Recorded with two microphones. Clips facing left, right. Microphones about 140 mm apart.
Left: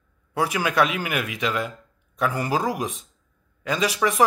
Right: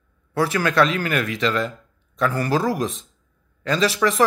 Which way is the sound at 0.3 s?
15° left (ahead or behind).